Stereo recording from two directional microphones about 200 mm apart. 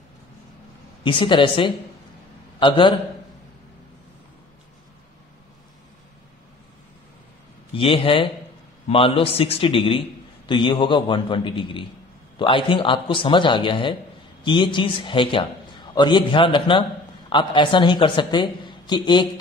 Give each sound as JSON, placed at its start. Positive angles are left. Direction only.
{"t": 1.0, "sound": "a man's voice", "side_deg": 25}
{"t": 7.7, "sound": "a man's voice", "side_deg": 25}